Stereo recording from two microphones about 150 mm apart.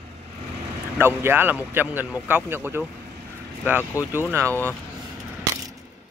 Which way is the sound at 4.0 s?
10° right (ahead or behind).